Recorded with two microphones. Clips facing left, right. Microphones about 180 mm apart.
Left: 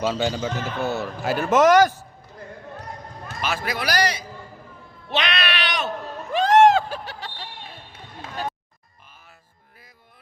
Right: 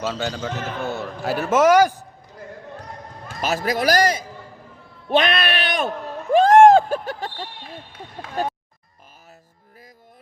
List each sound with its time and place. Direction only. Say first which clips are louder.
0.0 s a man's voice: left 2 dB; 15° left (ahead or behind); by 2.0 s 10° right (ahead or behind)
3.4 s a man's voice: right 6 dB; 40° right (ahead or behind)
6.3 s a sound: right 4 dB; 50° right (ahead or behind)
8.4 s speech: right 5 dB; 45° right (ahead or behind)